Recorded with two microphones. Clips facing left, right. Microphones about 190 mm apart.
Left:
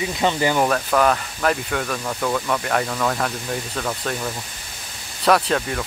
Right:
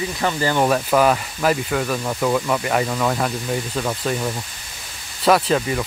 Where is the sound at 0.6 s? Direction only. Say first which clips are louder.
Right 5 dB; 10° right (ahead or behind).